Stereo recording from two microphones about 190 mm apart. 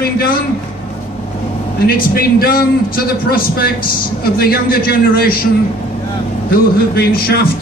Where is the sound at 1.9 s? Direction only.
50° left (ahead or behind).